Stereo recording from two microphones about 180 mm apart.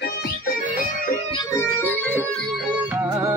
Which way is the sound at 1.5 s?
10° left (ahead or behind).